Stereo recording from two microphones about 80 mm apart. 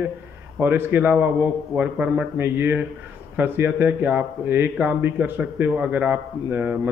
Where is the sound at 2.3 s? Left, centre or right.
Right.